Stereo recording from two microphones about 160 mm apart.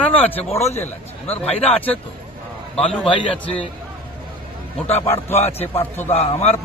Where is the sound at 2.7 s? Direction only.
35° left (ahead or behind).